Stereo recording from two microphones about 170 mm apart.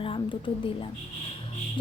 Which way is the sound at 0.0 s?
30° left (ahead or behind).